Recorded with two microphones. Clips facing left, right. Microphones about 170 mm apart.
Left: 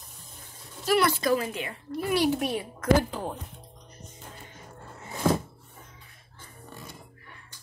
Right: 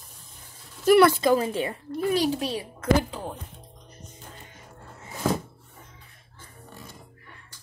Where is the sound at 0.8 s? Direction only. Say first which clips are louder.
Right 7 dB; 50° right (ahead or behind).